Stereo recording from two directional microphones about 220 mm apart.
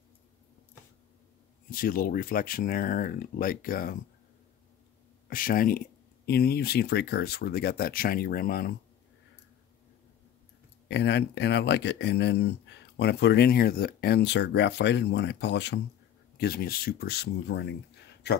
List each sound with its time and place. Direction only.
1.7 s speech: 40° left (ahead or behind)
5.3 s speech: 40° left (ahead or behind)
10.9 s speech: 50° left (ahead or behind)